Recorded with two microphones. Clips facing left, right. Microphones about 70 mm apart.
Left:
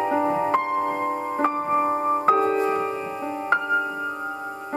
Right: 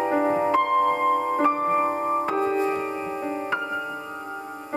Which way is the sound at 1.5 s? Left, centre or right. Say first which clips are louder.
Left 2 dB; right.